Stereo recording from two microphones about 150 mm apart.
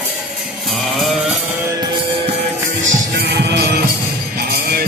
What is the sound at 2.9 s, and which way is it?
Music, 90° right.